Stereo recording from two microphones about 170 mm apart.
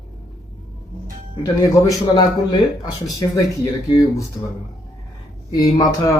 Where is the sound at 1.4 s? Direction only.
20° left (ahead or behind).